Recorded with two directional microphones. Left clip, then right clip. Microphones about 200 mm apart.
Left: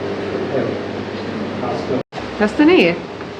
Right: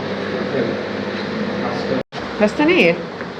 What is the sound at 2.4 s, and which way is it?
Speech, 20° left (ahead or behind).